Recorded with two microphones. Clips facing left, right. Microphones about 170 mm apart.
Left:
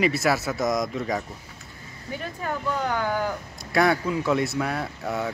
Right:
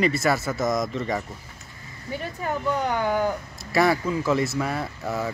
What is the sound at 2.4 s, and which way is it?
Speech, 15° right (ahead or behind).